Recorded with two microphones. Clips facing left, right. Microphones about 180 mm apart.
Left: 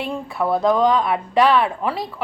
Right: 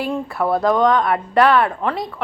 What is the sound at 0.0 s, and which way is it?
A woman's voice, centre (ahead or behind).